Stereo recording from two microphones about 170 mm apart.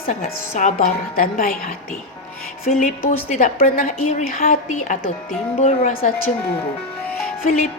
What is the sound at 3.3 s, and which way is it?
Music, 45° left (ahead or behind).